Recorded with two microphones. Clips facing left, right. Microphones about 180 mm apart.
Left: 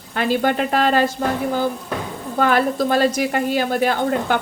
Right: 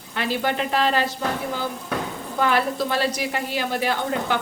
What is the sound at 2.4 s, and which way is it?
A woman's voice, 50° left (ahead or behind).